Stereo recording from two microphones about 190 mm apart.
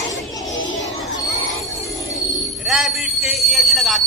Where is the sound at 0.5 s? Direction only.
90° left.